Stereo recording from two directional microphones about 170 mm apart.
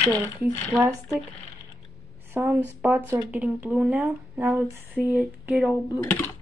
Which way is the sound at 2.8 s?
10° right (ahead or behind).